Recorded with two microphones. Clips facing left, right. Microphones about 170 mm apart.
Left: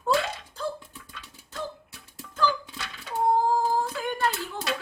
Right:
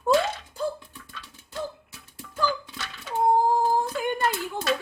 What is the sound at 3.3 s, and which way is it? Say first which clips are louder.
Humming: right 2 dB; 15° right (ahead or behind).